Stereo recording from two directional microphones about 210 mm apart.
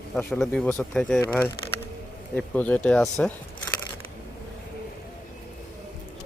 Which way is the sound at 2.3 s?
5° left (ahead or behind).